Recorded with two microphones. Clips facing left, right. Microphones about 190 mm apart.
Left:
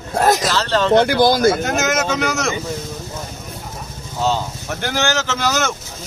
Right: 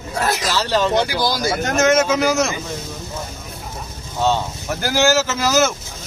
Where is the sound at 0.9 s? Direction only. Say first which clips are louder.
Left 6 dB; 55° left (ahead or behind).